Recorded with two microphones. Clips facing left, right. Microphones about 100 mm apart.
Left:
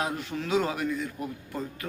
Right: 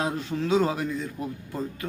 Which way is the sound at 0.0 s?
25° right (ahead or behind).